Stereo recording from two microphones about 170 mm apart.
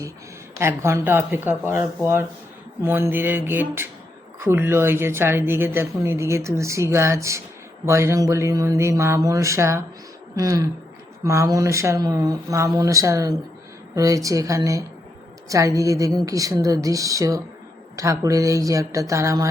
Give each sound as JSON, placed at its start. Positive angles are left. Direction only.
{"t": 0.6, "sound": "a woman's voice", "side_deg": -15}